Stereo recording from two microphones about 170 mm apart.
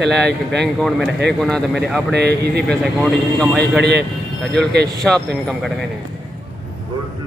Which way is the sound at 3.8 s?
80° right.